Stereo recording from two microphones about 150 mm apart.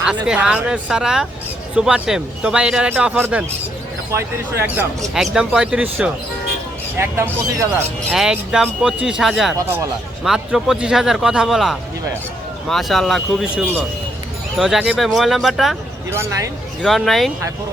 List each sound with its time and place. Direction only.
0.3 s a man's voice: 5° right (ahead or behind)
5.1 s a man's voice: 5° right (ahead or behind)
8.1 s speech: 5° right (ahead or behind)
9.6 s speech: 20° right (ahead or behind)
10.2 s speech: 5° right (ahead or behind)
16.0 s a man's voice: 20° right (ahead or behind)
16.8 s speech: centre (ahead or behind)